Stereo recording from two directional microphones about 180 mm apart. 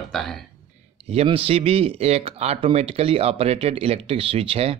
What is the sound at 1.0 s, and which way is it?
Speech, 35° right (ahead or behind).